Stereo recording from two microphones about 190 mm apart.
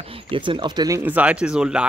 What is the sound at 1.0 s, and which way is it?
Speech, 10° right (ahead or behind).